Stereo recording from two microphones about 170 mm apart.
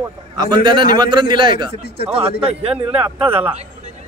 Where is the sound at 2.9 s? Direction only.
10° right (ahead or behind).